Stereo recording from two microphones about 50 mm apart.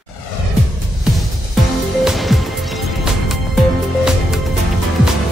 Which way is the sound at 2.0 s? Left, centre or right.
Centre.